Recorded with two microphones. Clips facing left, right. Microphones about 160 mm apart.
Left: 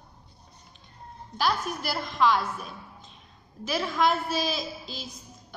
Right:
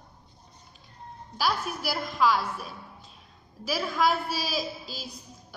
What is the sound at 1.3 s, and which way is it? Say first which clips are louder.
A woman's voice: left 1 dB; 5° right (ahead or behind).